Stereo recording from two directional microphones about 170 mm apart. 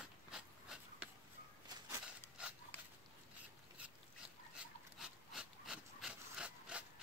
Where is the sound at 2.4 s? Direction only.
5° right (ahead or behind).